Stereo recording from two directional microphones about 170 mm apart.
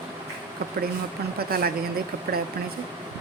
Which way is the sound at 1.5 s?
60° right (ahead or behind).